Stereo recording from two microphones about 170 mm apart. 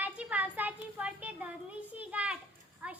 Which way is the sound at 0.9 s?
10° right (ahead or behind).